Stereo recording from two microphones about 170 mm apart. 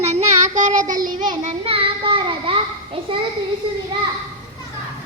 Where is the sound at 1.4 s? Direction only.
35° right (ahead or behind).